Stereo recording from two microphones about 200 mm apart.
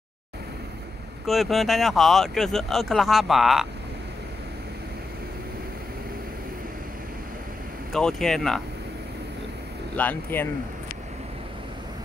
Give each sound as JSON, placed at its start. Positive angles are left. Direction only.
{"t": 1.2, "sound": "speech", "side_deg": 0}
{"t": 7.9, "sound": "speech", "side_deg": 0}
{"t": 9.9, "sound": "speech", "side_deg": 10}